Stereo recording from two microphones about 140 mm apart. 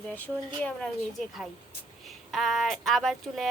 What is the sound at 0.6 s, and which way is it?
Speech, 5° left (ahead or behind).